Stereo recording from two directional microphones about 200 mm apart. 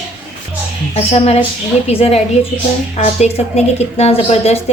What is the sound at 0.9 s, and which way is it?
A woman's voice, 30° left (ahead or behind).